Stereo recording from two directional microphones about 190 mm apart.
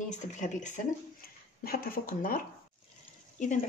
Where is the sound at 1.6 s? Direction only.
50° left (ahead or behind).